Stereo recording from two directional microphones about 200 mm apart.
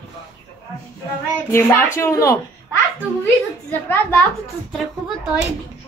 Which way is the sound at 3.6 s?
10° left (ahead or behind).